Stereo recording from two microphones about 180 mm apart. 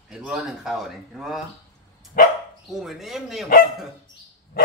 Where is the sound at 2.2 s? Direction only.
55° left (ahead or behind).